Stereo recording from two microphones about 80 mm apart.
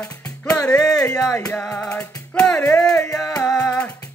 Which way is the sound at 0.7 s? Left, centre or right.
Centre.